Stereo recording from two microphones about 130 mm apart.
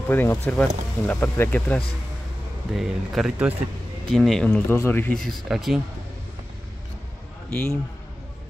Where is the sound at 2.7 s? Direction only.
Centre (ahead or behind).